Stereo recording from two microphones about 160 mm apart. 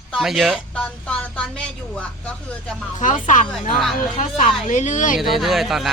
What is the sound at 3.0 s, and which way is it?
Speech, 55° left (ahead or behind).